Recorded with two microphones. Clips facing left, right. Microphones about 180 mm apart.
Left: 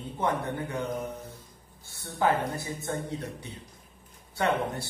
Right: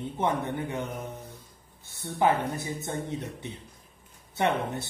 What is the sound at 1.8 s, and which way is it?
Speech, 20° right (ahead or behind).